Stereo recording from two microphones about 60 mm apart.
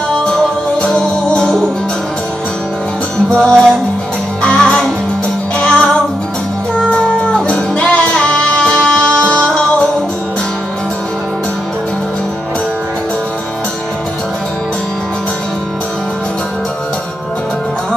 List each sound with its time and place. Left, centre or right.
0.3 s music: centre
3.3 s music: centre
4.4 s music: centre